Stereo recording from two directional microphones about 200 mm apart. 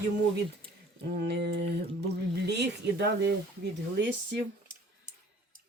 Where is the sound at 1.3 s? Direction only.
55° right (ahead or behind).